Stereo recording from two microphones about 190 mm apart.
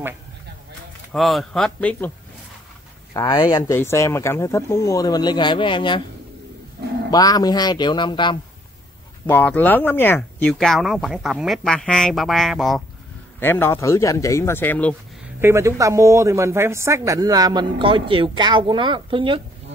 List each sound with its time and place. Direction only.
1.1 s speech: centre (ahead or behind)
3.1 s speech: 25° left (ahead or behind)
7.1 s speech: 20° left (ahead or behind)
9.2 s speech: 10° left (ahead or behind)
13.4 s speech: 10° left (ahead or behind)
15.4 s speech: 15° right (ahead or behind)